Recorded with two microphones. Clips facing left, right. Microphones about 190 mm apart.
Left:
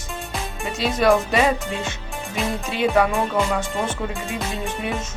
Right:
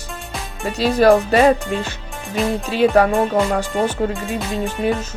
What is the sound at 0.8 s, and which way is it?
Speech, 35° right (ahead or behind).